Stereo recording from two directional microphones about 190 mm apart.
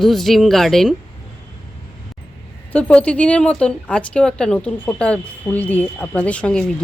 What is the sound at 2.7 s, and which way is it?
Speech, 5° left (ahead or behind).